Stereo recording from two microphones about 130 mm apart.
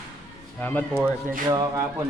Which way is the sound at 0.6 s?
15° left (ahead or behind).